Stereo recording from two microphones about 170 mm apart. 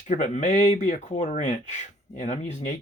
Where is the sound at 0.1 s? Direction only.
45° left (ahead or behind).